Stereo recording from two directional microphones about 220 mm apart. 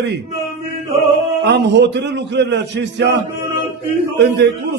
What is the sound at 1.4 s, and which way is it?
A man's voice, 50° right (ahead or behind).